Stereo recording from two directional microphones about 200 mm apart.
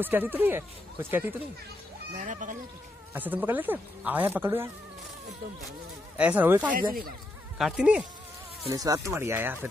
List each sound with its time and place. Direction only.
0.0 s speech: 10° right (ahead or behind)
2.1 s speech: 40° right (ahead or behind)
3.1 s speech: 10° right (ahead or behind)
6.1 s speech: 5° right (ahead or behind)
8.6 s speech: 15° right (ahead or behind)